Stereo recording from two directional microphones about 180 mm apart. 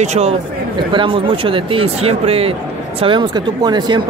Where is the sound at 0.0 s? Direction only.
40° right (ahead or behind).